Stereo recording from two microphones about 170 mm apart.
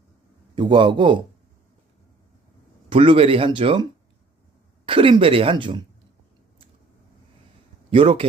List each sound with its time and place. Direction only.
0.5 s a man's voice: 30° right (ahead or behind)
2.9 s speech: 30° right (ahead or behind)
4.9 s speech: 30° right (ahead or behind)
7.9 s speech: 35° right (ahead or behind)